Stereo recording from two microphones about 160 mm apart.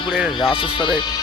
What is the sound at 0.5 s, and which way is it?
Speech, 30° left (ahead or behind).